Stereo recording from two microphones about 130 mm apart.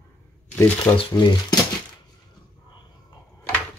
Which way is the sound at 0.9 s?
40° left (ahead or behind).